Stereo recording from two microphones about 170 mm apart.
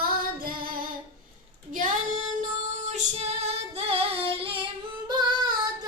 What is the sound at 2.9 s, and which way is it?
Female singing, 40° right (ahead or behind).